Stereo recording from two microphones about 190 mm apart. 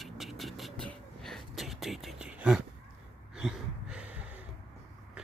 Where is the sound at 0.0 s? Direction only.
Centre (ahead or behind).